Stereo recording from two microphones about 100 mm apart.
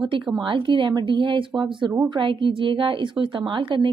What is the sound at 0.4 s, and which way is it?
A woman's voice, 55° right (ahead or behind).